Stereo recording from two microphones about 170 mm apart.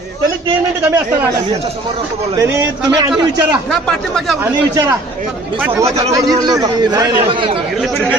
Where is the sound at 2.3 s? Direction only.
20° right (ahead or behind).